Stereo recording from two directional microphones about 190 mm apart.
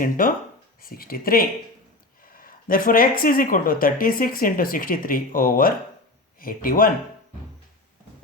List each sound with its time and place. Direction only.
0.0 s speech: 45° left (ahead or behind)